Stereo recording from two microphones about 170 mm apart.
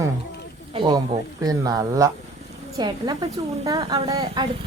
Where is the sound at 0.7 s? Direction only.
25° right (ahead or behind).